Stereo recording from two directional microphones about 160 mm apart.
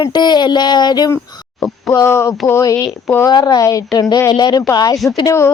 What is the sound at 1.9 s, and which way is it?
Speech, 20° left (ahead or behind).